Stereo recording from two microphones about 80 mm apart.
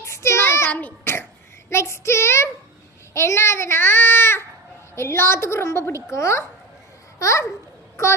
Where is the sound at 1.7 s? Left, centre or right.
Left.